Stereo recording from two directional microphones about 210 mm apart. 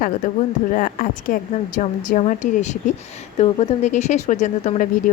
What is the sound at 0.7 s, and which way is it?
A woman's voice, 40° left (ahead or behind).